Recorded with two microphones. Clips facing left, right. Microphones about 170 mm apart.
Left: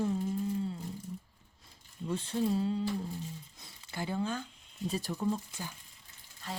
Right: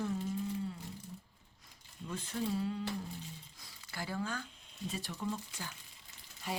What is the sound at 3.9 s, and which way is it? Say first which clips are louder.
Speech: left 5 dB; 20° left (ahead or behind).